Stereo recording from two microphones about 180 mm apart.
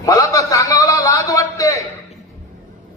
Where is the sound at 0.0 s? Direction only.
20° left (ahead or behind).